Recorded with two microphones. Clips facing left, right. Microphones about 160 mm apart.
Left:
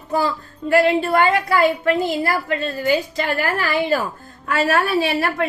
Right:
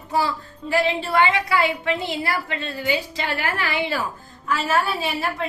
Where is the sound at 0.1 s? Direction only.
45° left (ahead or behind).